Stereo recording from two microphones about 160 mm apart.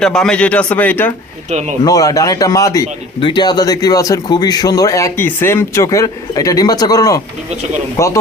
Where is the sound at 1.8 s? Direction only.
20° left (ahead or behind).